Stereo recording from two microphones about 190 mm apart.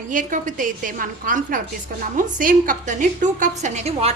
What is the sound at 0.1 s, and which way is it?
A woman's voice, 45° right (ahead or behind).